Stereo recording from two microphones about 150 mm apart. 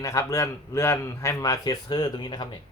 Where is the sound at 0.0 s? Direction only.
20° left (ahead or behind).